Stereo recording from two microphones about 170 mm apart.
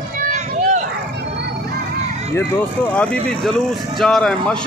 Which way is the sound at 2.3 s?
10° left (ahead or behind).